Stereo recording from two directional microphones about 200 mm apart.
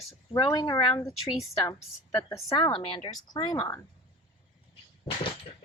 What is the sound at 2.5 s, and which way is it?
A woman's voice, 25° left (ahead or behind).